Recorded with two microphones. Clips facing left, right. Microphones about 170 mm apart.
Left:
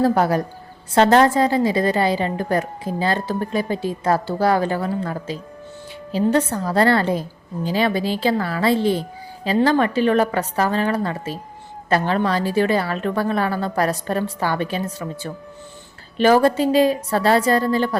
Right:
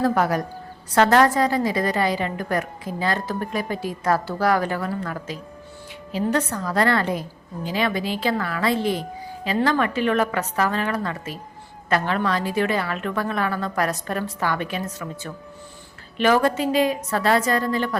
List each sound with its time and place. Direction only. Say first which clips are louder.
0.0 s a woman's voice: left 3 dB; 30° left (ahead or behind)